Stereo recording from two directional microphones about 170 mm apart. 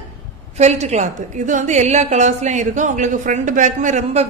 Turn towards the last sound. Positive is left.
turn(degrees=-45)  # may be behind; listen again after turning